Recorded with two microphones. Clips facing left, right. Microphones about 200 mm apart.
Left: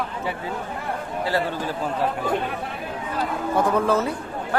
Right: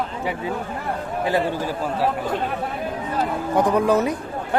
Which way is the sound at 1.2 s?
15° right (ahead or behind).